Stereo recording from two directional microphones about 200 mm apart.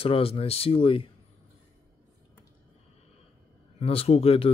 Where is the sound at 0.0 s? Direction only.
30° left (ahead or behind).